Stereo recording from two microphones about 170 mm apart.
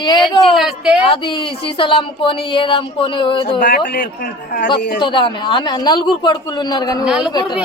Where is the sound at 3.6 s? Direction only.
50° left (ahead or behind).